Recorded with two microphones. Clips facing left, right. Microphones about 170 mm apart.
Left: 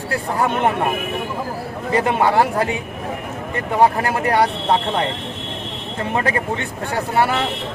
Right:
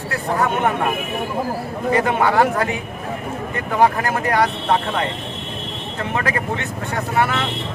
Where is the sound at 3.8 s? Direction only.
30° left (ahead or behind).